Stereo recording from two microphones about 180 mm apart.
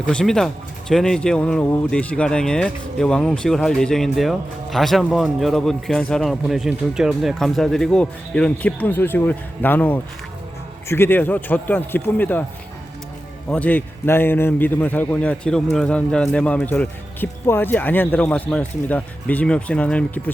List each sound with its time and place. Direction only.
0.0 s speech: 5° left (ahead or behind)
13.5 s speech: 10° left (ahead or behind)